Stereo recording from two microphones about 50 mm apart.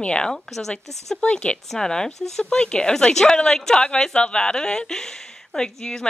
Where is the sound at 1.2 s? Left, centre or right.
Left.